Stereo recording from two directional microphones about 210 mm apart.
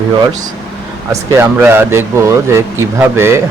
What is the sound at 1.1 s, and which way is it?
Speech, 10° right (ahead or behind).